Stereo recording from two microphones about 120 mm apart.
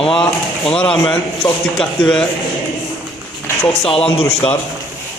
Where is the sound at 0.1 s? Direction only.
5° left (ahead or behind).